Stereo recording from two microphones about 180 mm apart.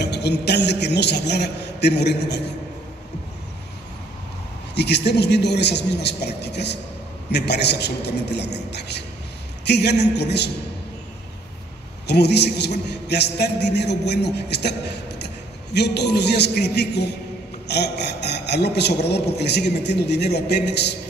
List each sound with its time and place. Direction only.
0.0 s a man's voice: 70° left (ahead or behind)
4.7 s a man's voice: 70° left (ahead or behind)
12.1 s a man's voice: 65° left (ahead or behind)